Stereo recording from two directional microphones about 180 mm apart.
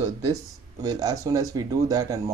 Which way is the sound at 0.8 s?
20° right (ahead or behind).